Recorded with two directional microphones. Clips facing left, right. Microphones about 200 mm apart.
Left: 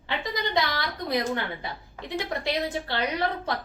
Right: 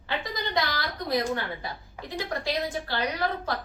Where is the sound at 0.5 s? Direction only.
20° left (ahead or behind).